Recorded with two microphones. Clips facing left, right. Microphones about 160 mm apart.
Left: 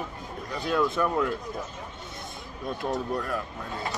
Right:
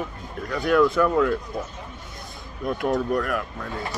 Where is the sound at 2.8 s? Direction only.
90° right.